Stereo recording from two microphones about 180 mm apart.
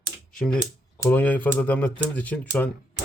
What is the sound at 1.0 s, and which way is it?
Speech, 10° left (ahead or behind).